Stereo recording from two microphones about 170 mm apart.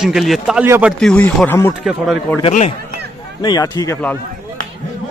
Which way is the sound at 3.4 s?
25° left (ahead or behind).